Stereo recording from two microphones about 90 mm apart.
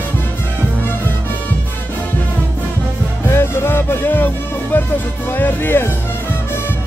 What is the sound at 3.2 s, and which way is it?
Music, 25° left (ahead or behind).